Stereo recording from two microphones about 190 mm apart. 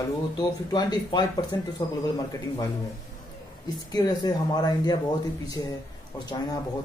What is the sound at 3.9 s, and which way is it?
Speech, 20° left (ahead or behind).